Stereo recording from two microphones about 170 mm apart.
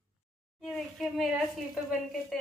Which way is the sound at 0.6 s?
Centre (ahead or behind).